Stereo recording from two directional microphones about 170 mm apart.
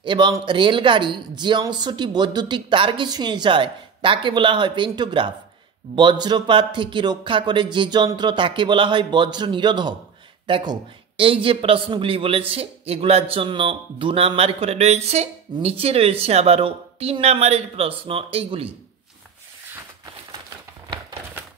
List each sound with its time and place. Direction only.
0.0 s a man's voice: 30° right (ahead or behind)